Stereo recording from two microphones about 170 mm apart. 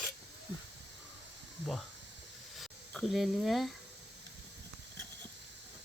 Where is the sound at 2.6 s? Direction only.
Centre (ahead or behind).